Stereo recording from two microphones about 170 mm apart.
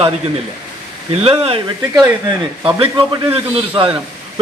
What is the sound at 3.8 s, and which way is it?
Speech, 30° right (ahead or behind).